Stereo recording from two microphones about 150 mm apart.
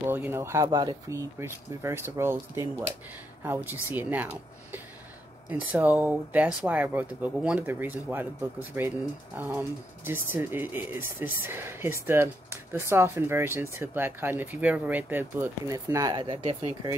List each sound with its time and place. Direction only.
0.0 s speech: 15° right (ahead or behind)
3.9 s speech: 10° right (ahead or behind)
5.5 s speech: 10° right (ahead or behind); by 16.9 s 35° right (ahead or behind)